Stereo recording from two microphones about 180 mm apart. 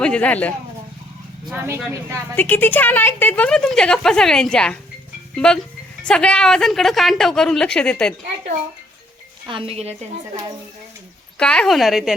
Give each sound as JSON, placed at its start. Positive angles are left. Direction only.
{"t": 0.0, "sound": "speech", "side_deg": 5}
{"t": 1.5, "sound": "speech", "side_deg": -10}
{"t": 2.3, "sound": "a woman's voice", "side_deg": 10}
{"t": 6.1, "sound": "a woman's voice", "side_deg": 5}
{"t": 9.5, "sound": "a woman's voice", "side_deg": -30}
{"t": 11.3, "sound": "a woman's voice", "side_deg": 5}